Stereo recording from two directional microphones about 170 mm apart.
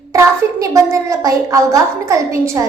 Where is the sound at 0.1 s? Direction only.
20° right (ahead or behind).